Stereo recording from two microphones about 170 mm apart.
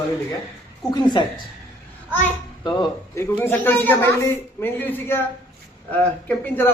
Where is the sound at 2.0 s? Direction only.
10° left (ahead or behind).